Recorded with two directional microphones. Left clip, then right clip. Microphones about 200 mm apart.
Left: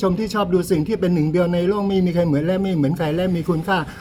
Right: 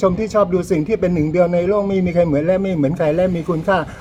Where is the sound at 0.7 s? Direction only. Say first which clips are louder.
Right 3 dB; 25° left (ahead or behind).